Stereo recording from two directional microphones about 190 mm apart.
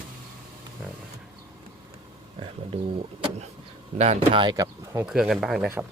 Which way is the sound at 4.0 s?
35° right (ahead or behind).